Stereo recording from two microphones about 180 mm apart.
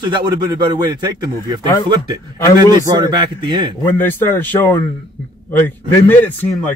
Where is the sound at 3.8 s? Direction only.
10° left (ahead or behind).